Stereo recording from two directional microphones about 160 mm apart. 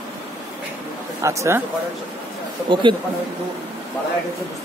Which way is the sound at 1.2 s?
20° right (ahead or behind).